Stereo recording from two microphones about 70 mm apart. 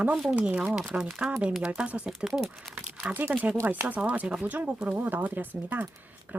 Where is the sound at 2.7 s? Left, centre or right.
Centre.